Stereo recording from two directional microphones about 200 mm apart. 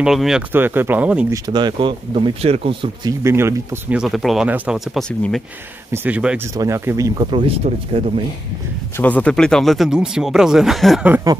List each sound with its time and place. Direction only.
0.0 s speech: centre (ahead or behind)
1.5 s speech: 25° right (ahead or behind)
8.9 s speech: 10° left (ahead or behind)